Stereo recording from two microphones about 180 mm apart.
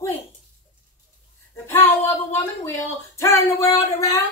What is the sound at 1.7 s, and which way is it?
Speech, 15° left (ahead or behind).